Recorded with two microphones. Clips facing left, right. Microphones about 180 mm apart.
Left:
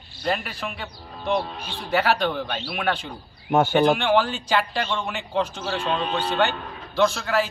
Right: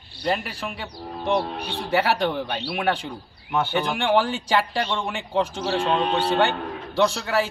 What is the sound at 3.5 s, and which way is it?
Speech, 45° left (ahead or behind).